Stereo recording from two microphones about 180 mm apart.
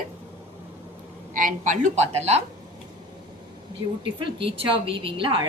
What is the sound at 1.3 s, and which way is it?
A woman's voice, 50° right (ahead or behind).